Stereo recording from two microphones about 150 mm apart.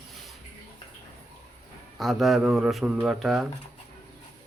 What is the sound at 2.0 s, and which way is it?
Speech, centre (ahead or behind).